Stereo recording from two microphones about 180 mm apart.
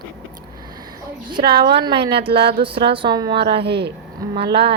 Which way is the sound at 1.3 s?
25° right (ahead or behind).